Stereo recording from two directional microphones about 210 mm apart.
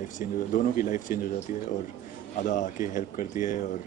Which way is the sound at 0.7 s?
40° left (ahead or behind).